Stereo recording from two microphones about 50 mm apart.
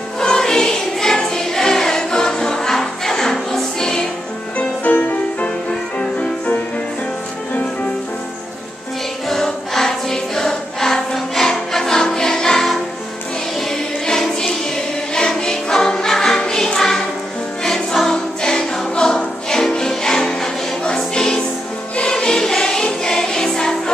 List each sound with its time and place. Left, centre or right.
0.2 s music: centre
4.6 s music: left
9.3 s music: centre